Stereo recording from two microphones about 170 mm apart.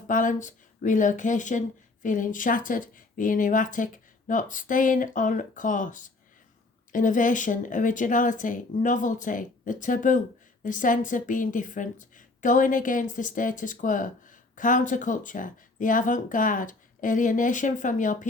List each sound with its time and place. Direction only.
0.1 s speech: 50° left (ahead or behind)